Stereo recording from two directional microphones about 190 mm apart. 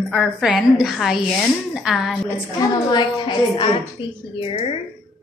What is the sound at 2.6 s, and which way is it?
A woman's voice, 25° left (ahead or behind).